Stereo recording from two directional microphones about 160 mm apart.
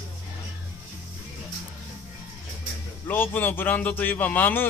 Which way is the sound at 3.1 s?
10° left (ahead or behind).